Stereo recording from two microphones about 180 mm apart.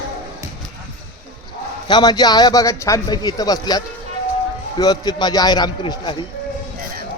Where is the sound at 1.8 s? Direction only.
20° left (ahead or behind).